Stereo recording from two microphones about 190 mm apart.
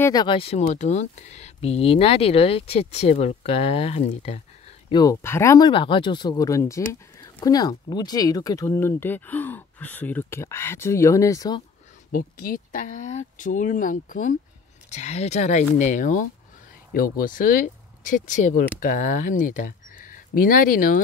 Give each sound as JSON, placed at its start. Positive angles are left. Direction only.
{"t": 0.0, "sound": "speech", "side_deg": 20}
{"t": 4.8, "sound": "speech", "side_deg": 20}
{"t": 12.1, "sound": "speech", "side_deg": 50}